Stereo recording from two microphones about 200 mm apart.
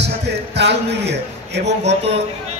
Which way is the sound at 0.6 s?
60° right (ahead or behind).